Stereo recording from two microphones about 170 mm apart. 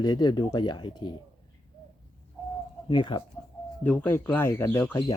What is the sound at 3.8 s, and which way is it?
Speech, 10° left (ahead or behind).